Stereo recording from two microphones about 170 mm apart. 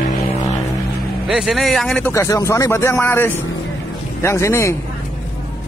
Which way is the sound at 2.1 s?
15° left (ahead or behind).